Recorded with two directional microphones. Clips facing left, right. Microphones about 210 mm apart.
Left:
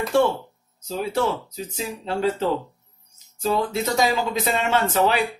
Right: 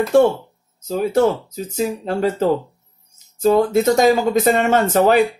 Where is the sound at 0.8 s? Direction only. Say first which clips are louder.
Right 7 dB; 45° right (ahead or behind).